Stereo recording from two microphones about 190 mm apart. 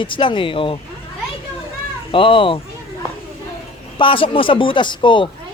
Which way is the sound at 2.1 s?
25° left (ahead or behind).